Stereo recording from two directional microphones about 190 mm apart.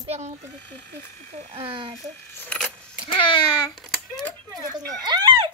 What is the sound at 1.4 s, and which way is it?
Speech, 30° right (ahead or behind).